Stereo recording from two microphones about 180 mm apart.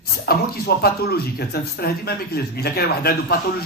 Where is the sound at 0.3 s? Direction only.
55° left (ahead or behind).